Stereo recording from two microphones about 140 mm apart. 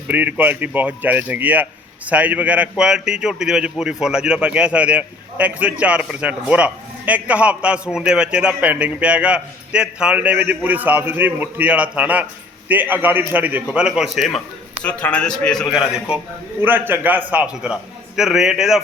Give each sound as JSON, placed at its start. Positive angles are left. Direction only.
{"t": 0.1, "sound": "a man's voice", "side_deg": -10}
{"t": 16.6, "sound": "a man's voice", "side_deg": -15}